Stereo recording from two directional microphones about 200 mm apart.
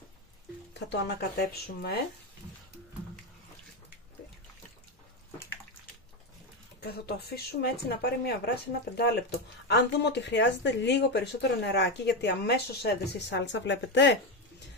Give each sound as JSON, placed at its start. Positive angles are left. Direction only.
{"t": 0.7, "sound": "speech", "side_deg": 60}
{"t": 6.8, "sound": "speech", "side_deg": 55}